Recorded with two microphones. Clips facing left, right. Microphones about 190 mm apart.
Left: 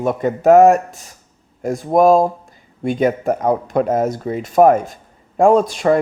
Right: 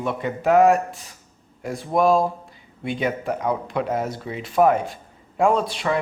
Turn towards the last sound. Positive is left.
turn(degrees=45)  # may be behind; listen again after turning